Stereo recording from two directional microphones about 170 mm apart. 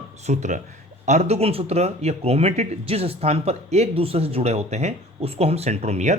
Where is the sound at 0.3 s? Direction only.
45° right (ahead or behind).